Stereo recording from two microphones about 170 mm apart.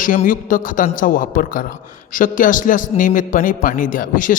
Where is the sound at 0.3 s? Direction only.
50° left (ahead or behind).